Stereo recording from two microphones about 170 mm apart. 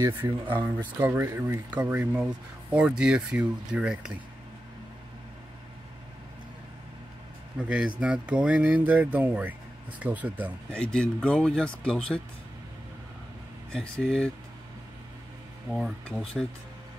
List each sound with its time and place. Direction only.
0.0 s speech: 10° right (ahead or behind)
7.6 s speech: 5° right (ahead or behind)
10.7 s speech: 5° left (ahead or behind)
13.7 s speech: 5° left (ahead or behind)
15.7 s speech: 5° left (ahead or behind)